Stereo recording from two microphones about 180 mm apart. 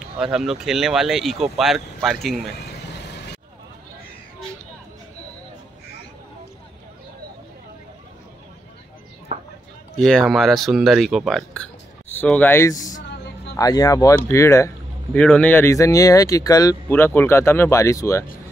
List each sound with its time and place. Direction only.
0.2 s speech: 5° right (ahead or behind)
3.0 s vehicle: 70° left (ahead or behind)
9.9 s speech: centre (ahead or behind); by 12.9 s 20° left (ahead or behind)
13.0 s a sound: 70° left (ahead or behind)
13.6 s speech: 20° left (ahead or behind)
15.1 s speech: 5° left (ahead or behind)